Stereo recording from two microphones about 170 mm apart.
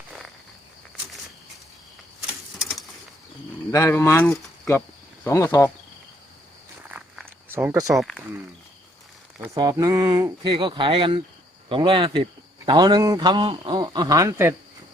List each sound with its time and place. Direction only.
3.7 s speech: 15° left (ahead or behind)
6.8 s a sound: 10° right (ahead or behind)
7.9 s speech: centre (ahead or behind)
9.6 s a man's voice: 20° right (ahead or behind)